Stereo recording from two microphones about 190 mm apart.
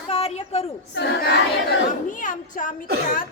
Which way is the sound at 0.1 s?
30° left (ahead or behind).